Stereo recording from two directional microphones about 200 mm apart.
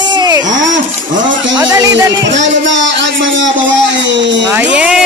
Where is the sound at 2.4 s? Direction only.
65° right (ahead or behind).